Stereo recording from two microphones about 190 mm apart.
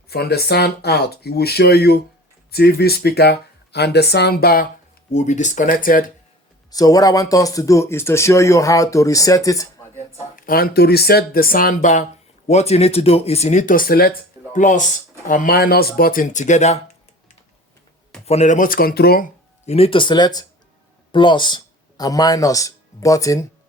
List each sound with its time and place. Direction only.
0.1 s speech: 55° left (ahead or behind)
5.1 s speech: 40° left (ahead or behind)
6.7 s speech: 20° left (ahead or behind)
10.3 s speech: 50° left (ahead or behind)
14.5 s speech: 40° left (ahead or behind)
18.3 s speech: 35° left (ahead or behind); by 19.2 s 55° left (ahead or behind)
19.6 s speech: 30° left (ahead or behind)